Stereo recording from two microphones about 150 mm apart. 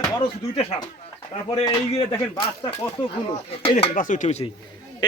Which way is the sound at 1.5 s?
25° left (ahead or behind).